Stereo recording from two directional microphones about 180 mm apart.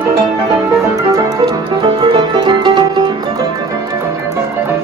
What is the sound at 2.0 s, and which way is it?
Music, 25° right (ahead or behind).